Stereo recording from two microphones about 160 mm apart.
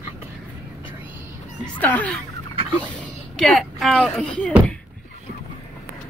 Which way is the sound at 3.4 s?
Centre (ahead or behind).